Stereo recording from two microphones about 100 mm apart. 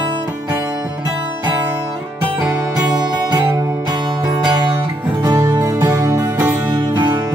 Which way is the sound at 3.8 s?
45° right (ahead or behind).